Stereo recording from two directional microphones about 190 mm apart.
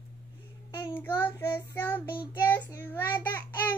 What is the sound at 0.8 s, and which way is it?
Child singing, 10° left (ahead or behind).